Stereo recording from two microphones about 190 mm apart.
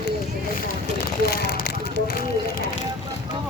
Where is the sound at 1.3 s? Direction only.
60° left (ahead or behind).